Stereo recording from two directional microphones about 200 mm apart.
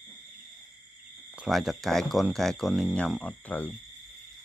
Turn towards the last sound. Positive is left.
turn(degrees=5)  # may be behind; listen again after turning